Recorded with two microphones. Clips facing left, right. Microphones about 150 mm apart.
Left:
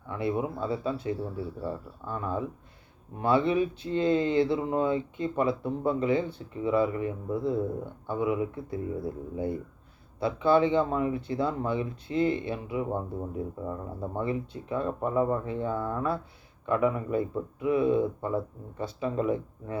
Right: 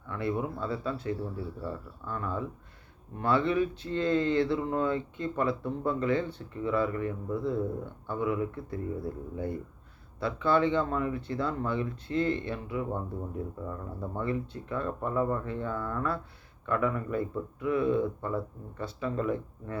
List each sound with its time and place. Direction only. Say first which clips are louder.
0.1 s speech: left 2 dB; 20° left (ahead or behind)